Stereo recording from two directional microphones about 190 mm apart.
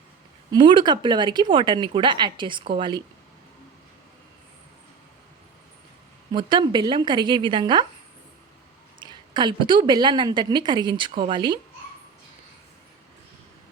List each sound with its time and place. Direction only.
0.5 s a woman's voice: 25° right (ahead or behind)
6.3 s a woman's voice: 25° right (ahead or behind)
9.0 s a woman's voice: 25° right (ahead or behind)